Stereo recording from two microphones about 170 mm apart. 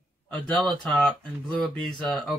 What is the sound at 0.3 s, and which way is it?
Speech, centre (ahead or behind).